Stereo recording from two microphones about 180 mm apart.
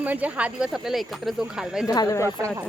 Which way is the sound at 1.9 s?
20° left (ahead or behind).